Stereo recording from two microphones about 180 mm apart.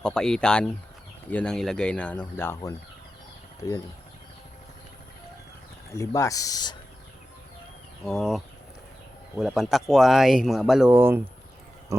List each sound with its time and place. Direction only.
0.0 s speech: 5° left (ahead or behind); by 3.8 s 20° left (ahead or behind)
5.9 s speech: 15° left (ahead or behind)
8.0 s speech: centre (ahead or behind)
9.4 s speech: centre (ahead or behind)